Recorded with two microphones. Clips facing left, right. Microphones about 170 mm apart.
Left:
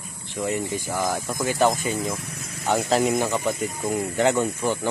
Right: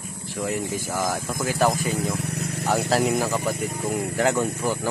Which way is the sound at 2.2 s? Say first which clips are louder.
Right 8 dB; 70° right (ahead or behind).